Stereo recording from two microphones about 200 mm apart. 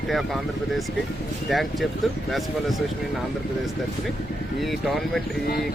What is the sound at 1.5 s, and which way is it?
Speech, centre (ahead or behind).